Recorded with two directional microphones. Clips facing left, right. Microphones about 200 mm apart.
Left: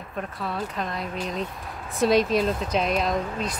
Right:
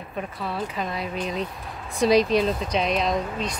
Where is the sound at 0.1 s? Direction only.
5° right (ahead or behind).